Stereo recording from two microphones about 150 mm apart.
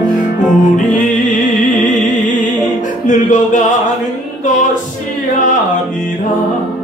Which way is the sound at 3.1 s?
55° left (ahead or behind).